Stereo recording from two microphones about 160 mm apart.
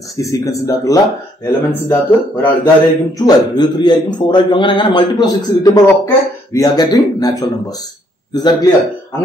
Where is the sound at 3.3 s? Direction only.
25° left (ahead or behind).